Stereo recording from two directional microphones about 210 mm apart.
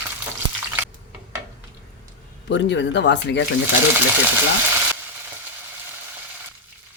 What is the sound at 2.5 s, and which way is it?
Speech, 60° left (ahead or behind).